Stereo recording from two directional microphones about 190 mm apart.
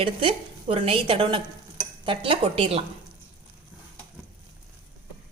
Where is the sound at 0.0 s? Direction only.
30° right (ahead or behind).